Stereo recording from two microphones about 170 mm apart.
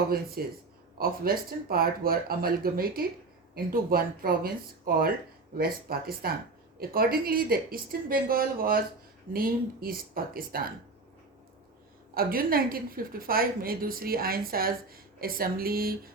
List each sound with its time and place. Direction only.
0.1 s a woman's voice: 60° right (ahead or behind)
12.1 s a woman's voice: 60° right (ahead or behind)